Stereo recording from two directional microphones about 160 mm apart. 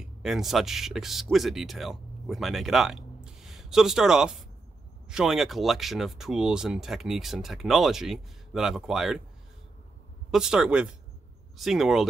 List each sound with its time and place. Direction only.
0.0 s speech: 5° right (ahead or behind)
10.3 s speech: 5° right (ahead or behind)